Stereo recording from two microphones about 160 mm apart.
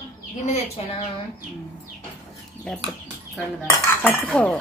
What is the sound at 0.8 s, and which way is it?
Speech, 35° left (ahead or behind).